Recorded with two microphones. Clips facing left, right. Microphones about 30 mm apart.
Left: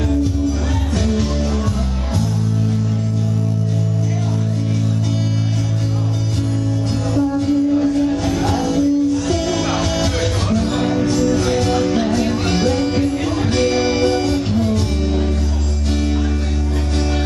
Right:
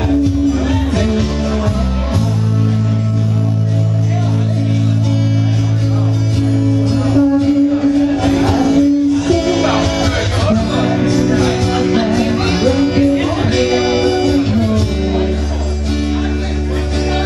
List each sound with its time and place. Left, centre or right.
0.1 s music: right
7.2 s music: right